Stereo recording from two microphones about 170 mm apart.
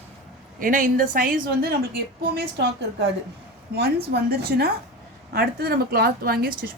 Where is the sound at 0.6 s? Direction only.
50° right (ahead or behind).